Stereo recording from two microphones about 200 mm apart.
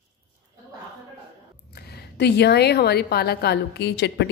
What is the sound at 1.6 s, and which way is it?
A woman's voice, 50° left (ahead or behind).